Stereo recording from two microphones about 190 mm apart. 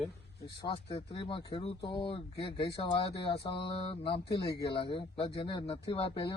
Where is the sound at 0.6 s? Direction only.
30° left (ahead or behind).